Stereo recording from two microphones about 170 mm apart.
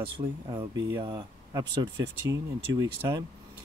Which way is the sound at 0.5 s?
25° right (ahead or behind).